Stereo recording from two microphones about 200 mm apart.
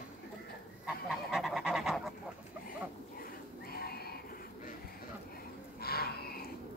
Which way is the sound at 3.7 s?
50° left (ahead or behind).